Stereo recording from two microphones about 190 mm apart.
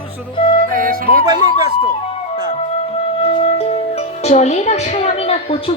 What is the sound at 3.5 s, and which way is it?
Speech, 35° left (ahead or behind).